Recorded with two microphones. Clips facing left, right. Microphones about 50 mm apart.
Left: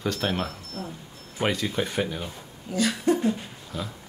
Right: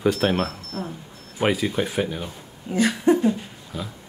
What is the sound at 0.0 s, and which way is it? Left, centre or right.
Speech, centre.